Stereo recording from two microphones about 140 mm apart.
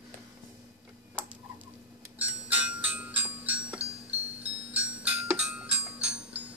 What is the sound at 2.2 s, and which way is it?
Music, 10° right (ahead or behind).